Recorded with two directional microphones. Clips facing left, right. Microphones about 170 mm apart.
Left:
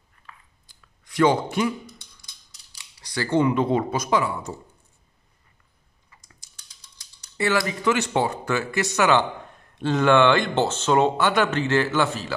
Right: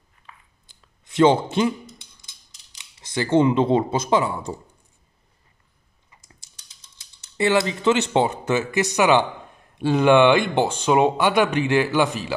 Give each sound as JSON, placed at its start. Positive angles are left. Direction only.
{"t": 0.7, "sound": "a sound", "side_deg": -25}
{"t": 6.0, "sound": "typing", "side_deg": -25}
{"t": 7.0, "sound": "speech", "side_deg": -25}